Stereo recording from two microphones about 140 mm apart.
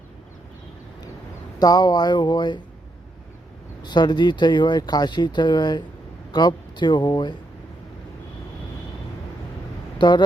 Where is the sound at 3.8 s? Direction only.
30° left (ahead or behind).